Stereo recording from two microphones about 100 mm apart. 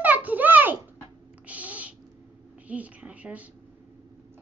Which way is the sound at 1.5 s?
15° right (ahead or behind).